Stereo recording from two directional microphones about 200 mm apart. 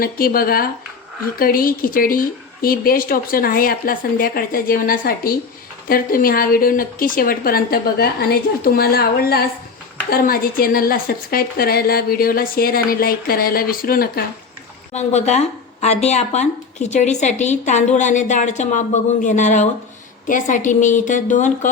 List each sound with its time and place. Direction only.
0.0 s a woman's voice: 45° left (ahead or behind)
14.9 s speech: 35° left (ahead or behind)